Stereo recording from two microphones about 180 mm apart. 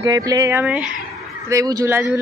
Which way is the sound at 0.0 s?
20° right (ahead or behind).